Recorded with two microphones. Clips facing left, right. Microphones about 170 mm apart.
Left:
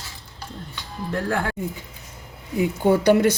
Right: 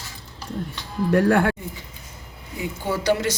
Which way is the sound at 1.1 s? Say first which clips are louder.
Right 7 dB; 70° right (ahead or behind).